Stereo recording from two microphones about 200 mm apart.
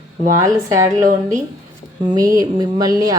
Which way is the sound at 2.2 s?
20° right (ahead or behind).